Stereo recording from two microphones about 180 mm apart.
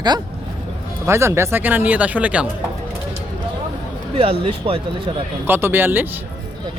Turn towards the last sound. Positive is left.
turn(degrees=-10)  # may be behind; listen again after turning